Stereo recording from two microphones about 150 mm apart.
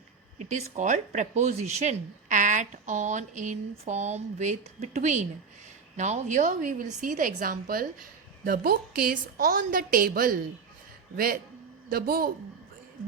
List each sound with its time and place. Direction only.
0.4 s a woman's voice: 50° right (ahead or behind); by 8.0 s 70° right (ahead or behind)
8.4 s a woman's voice: 80° right
11.9 s speech: 85° right